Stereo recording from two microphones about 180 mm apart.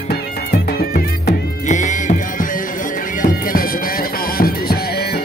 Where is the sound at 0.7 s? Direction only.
55° left (ahead or behind).